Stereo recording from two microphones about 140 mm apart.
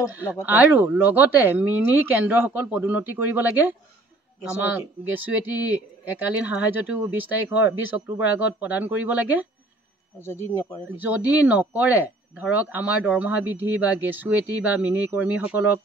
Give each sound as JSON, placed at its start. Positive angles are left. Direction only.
{"t": 0.1, "sound": "speech", "side_deg": -15}
{"t": 10.2, "sound": "speech", "side_deg": 20}
{"t": 11.0, "sound": "speech", "side_deg": -10}